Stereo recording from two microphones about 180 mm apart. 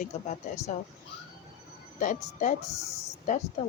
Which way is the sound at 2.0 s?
45° left (ahead or behind).